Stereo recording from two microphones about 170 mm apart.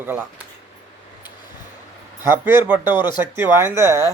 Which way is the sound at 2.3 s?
15° right (ahead or behind).